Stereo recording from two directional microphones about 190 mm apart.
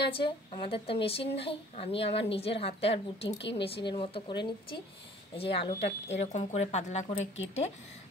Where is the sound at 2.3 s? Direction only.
30° left (ahead or behind).